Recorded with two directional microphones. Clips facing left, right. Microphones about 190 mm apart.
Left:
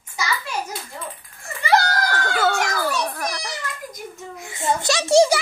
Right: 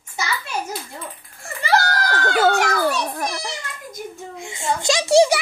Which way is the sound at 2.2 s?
30° right (ahead or behind).